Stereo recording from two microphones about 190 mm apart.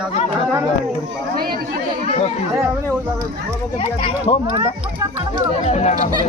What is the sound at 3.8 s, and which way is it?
Speech, 30° left (ahead or behind).